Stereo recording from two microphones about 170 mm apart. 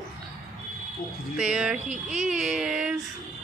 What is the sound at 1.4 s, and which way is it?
A woman's voice, 5° right (ahead or behind).